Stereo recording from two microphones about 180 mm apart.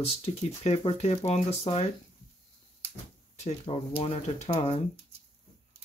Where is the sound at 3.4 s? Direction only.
30° left (ahead or behind).